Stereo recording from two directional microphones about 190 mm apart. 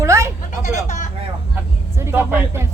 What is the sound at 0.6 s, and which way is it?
Speech, 40° left (ahead or behind).